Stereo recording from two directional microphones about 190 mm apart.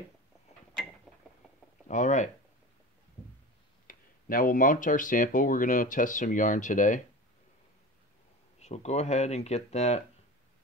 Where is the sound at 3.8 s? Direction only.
45° left (ahead or behind).